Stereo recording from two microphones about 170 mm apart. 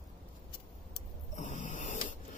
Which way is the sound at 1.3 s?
45° left (ahead or behind).